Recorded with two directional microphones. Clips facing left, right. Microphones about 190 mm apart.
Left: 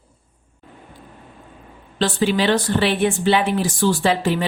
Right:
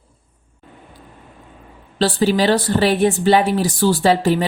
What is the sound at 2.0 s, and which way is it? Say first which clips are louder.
Speech: right 3 dB; 35° right (ahead or behind).